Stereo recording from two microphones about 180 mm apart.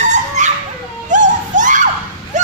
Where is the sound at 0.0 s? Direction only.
45° right (ahead or behind).